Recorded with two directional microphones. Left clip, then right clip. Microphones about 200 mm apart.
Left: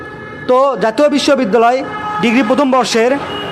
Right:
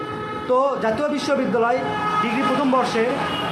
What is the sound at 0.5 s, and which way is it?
Speech, 45° left (ahead or behind).